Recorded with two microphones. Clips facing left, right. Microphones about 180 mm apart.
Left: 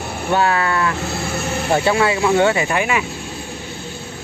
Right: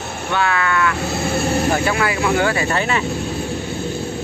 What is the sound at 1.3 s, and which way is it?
Vehicle, 35° right (ahead or behind).